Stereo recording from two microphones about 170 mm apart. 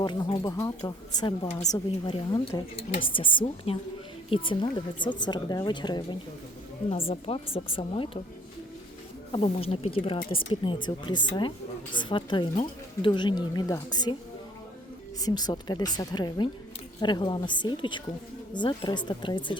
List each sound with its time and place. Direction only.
0.0 s a woman's voice: 25° left (ahead or behind)
9.3 s a woman's voice: 35° left (ahead or behind)
15.2 s speech: 25° left (ahead or behind)